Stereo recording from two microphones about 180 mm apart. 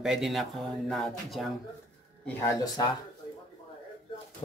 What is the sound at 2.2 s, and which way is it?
Speech, 15° left (ahead or behind).